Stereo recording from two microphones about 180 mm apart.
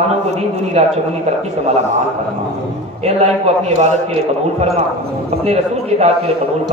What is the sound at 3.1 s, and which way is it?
Speech, 35° right (ahead or behind).